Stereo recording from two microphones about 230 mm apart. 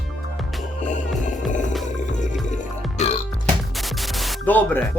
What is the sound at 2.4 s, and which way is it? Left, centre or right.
Music, left.